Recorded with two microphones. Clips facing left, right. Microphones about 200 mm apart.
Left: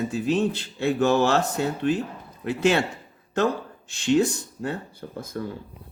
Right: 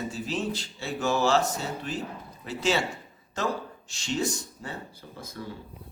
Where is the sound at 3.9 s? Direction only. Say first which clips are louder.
Left 9 dB; 60° left (ahead or behind).